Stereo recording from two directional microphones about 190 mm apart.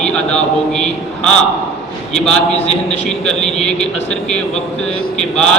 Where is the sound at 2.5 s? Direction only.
35° left (ahead or behind).